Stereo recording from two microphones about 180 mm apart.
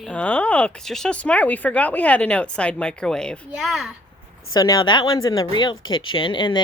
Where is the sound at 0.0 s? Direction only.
5° left (ahead or behind).